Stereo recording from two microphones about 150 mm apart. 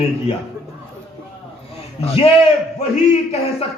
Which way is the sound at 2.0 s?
40° left (ahead or behind).